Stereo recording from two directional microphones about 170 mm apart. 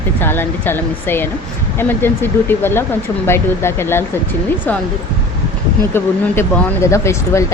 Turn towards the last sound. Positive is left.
turn(degrees=15)  # may be behind; listen again after turning